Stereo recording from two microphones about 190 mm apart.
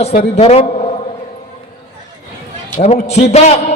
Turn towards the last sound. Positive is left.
turn(degrees=35)  # may be behind; listen again after turning